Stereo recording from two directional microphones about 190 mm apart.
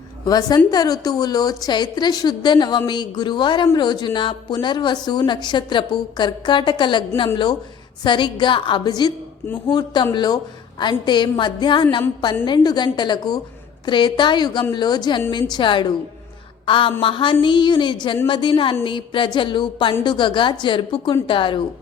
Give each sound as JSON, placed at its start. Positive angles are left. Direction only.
{"t": 0.3, "sound": "a woman's voice", "side_deg": 20}
{"t": 8.0, "sound": "a woman's voice", "side_deg": 25}